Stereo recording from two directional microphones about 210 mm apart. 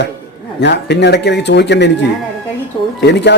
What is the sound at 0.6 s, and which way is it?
Speech, 55° left (ahead or behind).